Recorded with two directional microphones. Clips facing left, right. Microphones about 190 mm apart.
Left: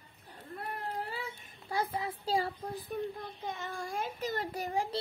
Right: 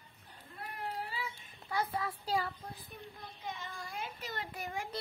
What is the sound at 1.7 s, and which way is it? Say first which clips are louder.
Speech: left 2 dB; 25° left (ahead or behind).